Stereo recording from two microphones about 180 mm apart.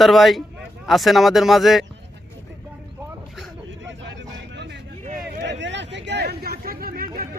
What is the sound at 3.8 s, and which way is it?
Vehicle, 90° right.